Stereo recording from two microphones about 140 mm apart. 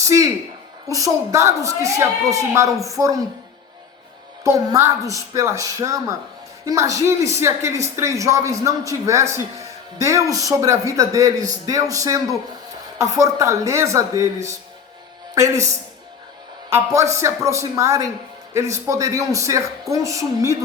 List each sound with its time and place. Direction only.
0.0 s a sound: 20° right (ahead or behind)
0.9 s speech: 25° right (ahead or behind)
4.4 s speech: 20° right (ahead or behind)
16.6 s speech: 20° right (ahead or behind)